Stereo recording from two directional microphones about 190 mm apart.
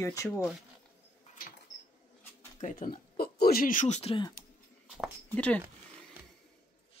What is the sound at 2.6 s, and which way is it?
Speech, 45° left (ahead or behind).